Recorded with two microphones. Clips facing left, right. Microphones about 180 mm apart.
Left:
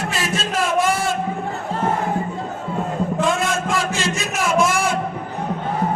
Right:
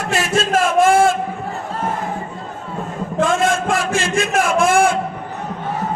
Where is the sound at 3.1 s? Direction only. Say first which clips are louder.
Right 7 dB; 45° right (ahead or behind).